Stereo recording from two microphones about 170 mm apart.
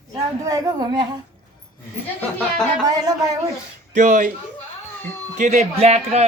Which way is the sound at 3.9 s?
45° right (ahead or behind).